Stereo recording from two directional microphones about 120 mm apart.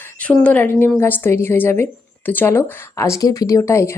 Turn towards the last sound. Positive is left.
turn(degrees=25)  # may be behind; listen again after turning